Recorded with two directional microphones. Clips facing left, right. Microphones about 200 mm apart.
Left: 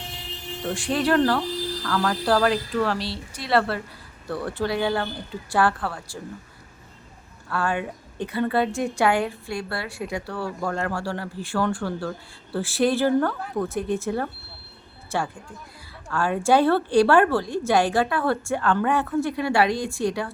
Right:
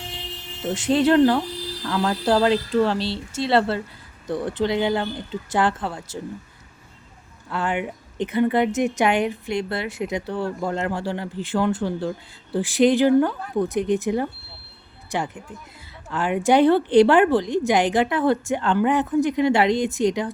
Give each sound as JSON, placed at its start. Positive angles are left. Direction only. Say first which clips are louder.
{"t": 0.7, "sound": "a woman's voice", "louder": "right 4 dB", "side_deg": -20}
{"t": 7.5, "sound": "a woman's voice", "louder": "right 1 dB", "side_deg": -20}